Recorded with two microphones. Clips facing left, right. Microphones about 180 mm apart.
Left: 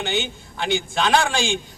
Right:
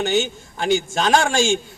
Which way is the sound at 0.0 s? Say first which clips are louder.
Right 5 dB; 45° right (ahead or behind).